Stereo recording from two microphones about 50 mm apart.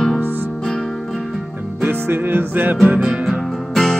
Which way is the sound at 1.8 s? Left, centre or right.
Right.